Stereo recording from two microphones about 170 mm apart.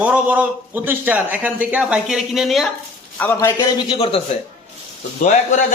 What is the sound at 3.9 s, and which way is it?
Speech, 35° left (ahead or behind).